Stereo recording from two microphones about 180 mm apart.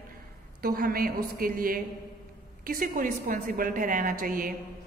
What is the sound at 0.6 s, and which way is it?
A woman's voice, 55° right (ahead or behind).